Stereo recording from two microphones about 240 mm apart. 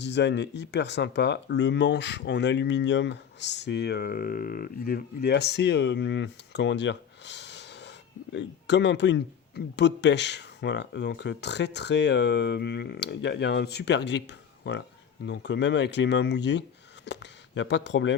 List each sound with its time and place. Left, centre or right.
0.0 s speech: left